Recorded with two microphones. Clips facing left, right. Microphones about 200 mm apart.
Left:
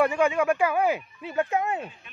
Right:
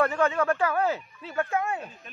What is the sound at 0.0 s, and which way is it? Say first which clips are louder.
Speech: left 2 dB; 10° left (ahead or behind).